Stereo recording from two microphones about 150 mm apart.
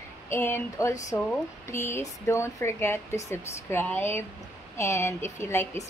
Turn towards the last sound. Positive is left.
turn(degrees=15)  # may be behind; listen again after turning